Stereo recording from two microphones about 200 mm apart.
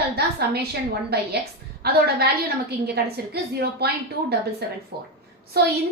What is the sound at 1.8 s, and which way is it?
A woman's voice, 50° right (ahead or behind).